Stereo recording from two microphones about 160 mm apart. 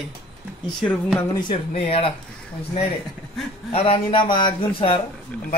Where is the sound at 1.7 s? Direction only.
40° left (ahead or behind).